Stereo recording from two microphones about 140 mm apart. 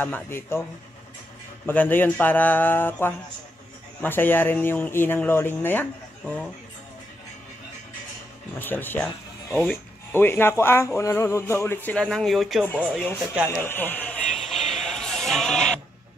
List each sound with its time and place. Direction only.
0.0 s speech: 15° left (ahead or behind)
1.7 s speech: 15° left (ahead or behind)
8.5 s speech: 15° left (ahead or behind)
13.5 s music: 15° left (ahead or behind)